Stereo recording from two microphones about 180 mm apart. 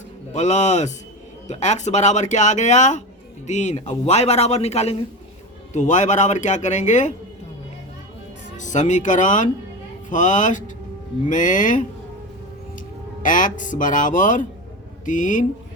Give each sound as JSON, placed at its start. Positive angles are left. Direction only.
{"t": 0.3, "sound": "a man's voice", "side_deg": 40}
{"t": 8.5, "sound": "speech", "side_deg": 45}
{"t": 13.2, "sound": "speech", "side_deg": 45}